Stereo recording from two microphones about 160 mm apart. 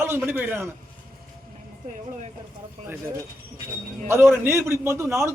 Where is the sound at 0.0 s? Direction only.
15° right (ahead or behind).